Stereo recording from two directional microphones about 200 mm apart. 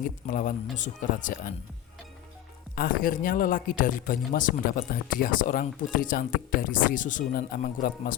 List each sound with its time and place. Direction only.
0.3 s speech: 40° left (ahead or behind)
2.7 s speech: 45° left (ahead or behind)